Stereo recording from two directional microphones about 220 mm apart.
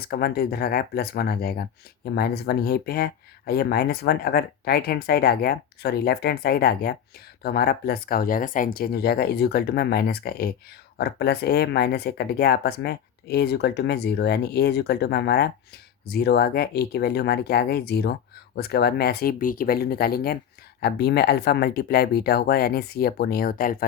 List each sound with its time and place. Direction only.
0.1 s speech: 45° left (ahead or behind)